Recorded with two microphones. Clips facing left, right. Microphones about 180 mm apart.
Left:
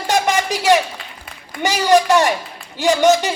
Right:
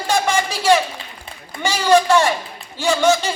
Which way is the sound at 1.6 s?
15° left (ahead or behind).